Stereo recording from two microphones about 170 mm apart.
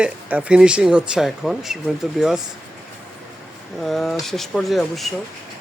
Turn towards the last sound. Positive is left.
turn(degrees=0)  # may be behind; listen again after turning